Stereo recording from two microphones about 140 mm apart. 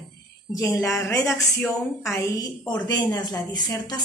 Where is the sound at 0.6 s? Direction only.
20° left (ahead or behind).